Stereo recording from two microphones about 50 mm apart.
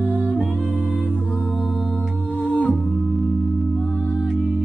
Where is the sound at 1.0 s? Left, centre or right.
Right.